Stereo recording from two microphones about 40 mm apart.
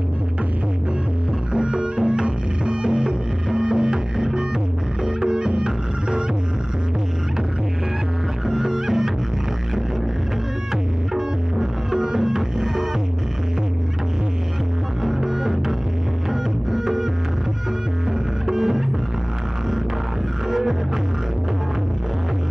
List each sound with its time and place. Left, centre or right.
1.5 s music: right
8.5 s music: centre
11.1 s music: centre
15.0 s music: centre
16.7 s music: centre
18.5 s music: centre